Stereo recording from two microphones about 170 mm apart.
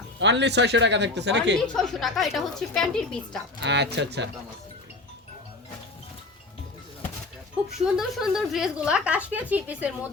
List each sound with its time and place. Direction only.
0.2 s speech: 90° right
1.6 s speech: 5° left (ahead or behind)
3.6 s speech: 90° right
7.9 s speech: centre (ahead or behind)